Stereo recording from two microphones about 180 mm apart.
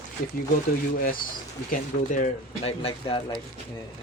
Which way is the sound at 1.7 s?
45° left (ahead or behind).